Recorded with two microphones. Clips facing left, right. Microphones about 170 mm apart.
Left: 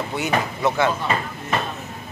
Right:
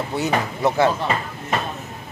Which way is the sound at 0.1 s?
35° right (ahead or behind).